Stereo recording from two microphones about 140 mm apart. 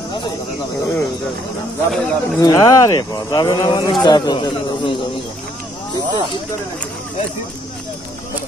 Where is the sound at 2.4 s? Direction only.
25° left (ahead or behind).